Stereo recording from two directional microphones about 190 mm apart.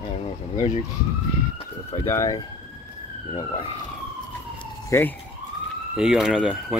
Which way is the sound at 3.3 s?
25° left (ahead or behind).